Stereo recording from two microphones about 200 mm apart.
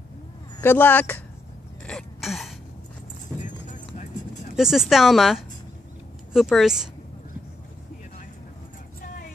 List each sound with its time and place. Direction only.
0.6 s speech: 10° left (ahead or behind)
1.9 s throat clearing: centre (ahead or behind)
3.3 s clip-clop: 40° left (ahead or behind)
4.6 s speech: centre (ahead or behind)